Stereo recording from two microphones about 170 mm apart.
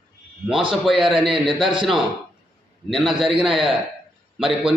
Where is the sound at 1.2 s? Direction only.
30° right (ahead or behind).